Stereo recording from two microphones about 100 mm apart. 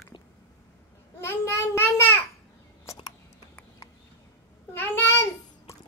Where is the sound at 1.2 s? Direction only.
25° left (ahead or behind).